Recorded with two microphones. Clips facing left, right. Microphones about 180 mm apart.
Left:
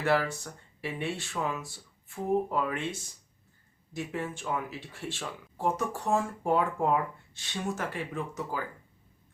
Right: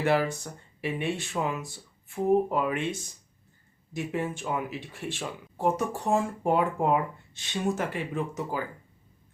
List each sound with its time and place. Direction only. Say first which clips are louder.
0.0 s speech: right 2 dB; 20° right (ahead or behind)
3.9 s speech: right 4 dB; 15° right (ahead or behind)